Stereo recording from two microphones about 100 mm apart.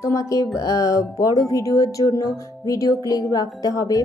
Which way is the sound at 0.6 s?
35° left (ahead or behind).